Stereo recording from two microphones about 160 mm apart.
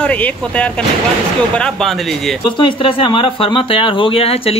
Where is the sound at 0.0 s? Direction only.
10° left (ahead or behind).